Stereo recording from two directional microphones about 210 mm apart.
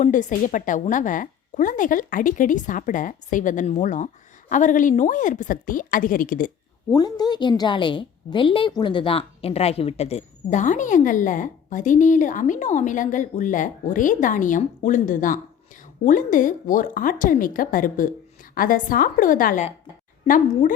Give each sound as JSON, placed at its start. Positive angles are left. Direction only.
{"t": 0.0, "sound": "a woman's voice", "side_deg": 35}
{"t": 6.9, "sound": "a woman's voice", "side_deg": 20}